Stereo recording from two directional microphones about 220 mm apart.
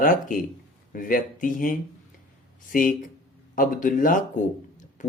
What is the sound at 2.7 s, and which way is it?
Speech, 35° left (ahead or behind).